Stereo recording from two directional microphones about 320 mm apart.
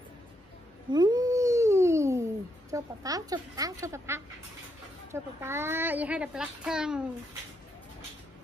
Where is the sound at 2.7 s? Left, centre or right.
Centre.